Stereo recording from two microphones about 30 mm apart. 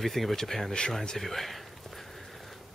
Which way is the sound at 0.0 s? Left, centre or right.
Centre.